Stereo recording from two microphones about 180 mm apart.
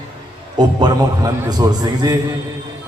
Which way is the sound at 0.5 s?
25° right (ahead or behind).